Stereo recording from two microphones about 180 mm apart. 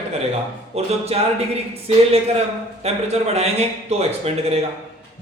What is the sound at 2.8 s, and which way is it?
A man's voice, 35° right (ahead or behind).